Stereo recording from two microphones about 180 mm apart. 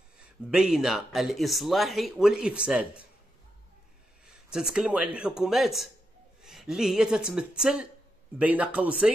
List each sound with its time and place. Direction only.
0.5 s speech: centre (ahead or behind)
4.3 s a man's voice: 5° right (ahead or behind)